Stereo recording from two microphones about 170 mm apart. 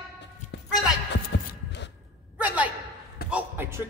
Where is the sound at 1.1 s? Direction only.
85° left.